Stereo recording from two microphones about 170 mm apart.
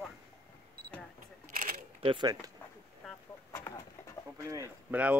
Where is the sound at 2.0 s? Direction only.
30° right (ahead or behind).